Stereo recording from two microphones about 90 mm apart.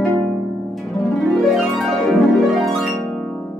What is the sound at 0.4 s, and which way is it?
Harp, 15° right (ahead or behind).